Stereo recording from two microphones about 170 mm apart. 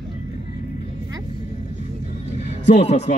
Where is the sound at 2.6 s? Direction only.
40° left (ahead or behind).